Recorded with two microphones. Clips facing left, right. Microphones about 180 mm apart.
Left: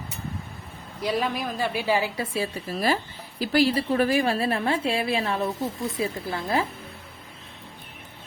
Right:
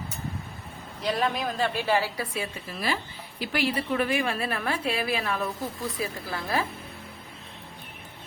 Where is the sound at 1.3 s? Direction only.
5° left (ahead or behind); by 6.6 s 25° left (ahead or behind).